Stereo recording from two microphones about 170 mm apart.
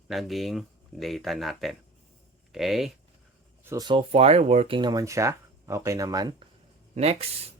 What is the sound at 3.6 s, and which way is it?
Speech, 20° right (ahead or behind).